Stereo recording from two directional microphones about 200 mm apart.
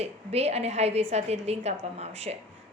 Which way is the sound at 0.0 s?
30° right (ahead or behind).